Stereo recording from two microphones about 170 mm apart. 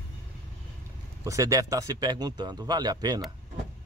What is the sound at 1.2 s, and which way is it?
Speech, 20° right (ahead or behind).